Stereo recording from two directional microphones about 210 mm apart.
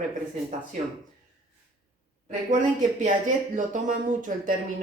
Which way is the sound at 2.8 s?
35° right (ahead or behind).